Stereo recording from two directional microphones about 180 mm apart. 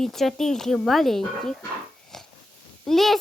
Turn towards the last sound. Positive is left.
turn(degrees=0)  # may be behind; listen again after turning